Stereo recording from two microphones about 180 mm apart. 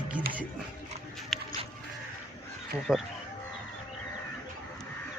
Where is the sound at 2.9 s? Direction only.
5° right (ahead or behind).